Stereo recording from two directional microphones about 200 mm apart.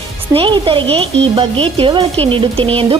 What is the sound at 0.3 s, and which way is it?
Speech, 25° right (ahead or behind).